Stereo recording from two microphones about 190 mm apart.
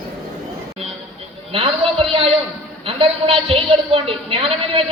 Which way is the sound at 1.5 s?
30° right (ahead or behind).